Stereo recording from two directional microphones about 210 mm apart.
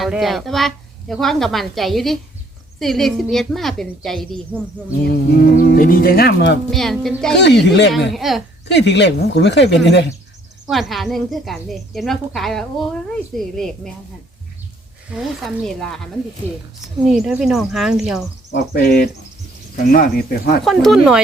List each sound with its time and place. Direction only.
0.0 s speech: centre (ahead or behind)
5.0 s speech: 50° left (ahead or behind)
6.7 s speech: centre (ahead or behind)
7.3 s speech: 55° left (ahead or behind)
8.1 s speech: centre (ahead or behind)
8.6 s speech: 55° left (ahead or behind)
10.7 s speech: centre (ahead or behind)
15.1 s speech: centre (ahead or behind)
16.4 s speech: 30° right (ahead or behind)
16.8 s speech: centre (ahead or behind)
18.5 s speech: 45° left (ahead or behind)
20.7 s speech: centre (ahead or behind)